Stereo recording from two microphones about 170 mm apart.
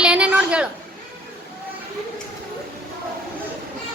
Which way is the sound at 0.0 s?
5° right (ahead or behind).